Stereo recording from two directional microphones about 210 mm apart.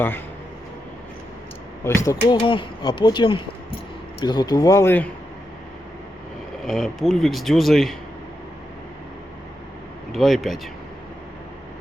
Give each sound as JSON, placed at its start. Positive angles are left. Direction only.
{"t": 1.8, "sound": "speech", "side_deg": 10}
{"t": 6.7, "sound": "speech", "side_deg": 0}
{"t": 10.1, "sound": "speech", "side_deg": 0}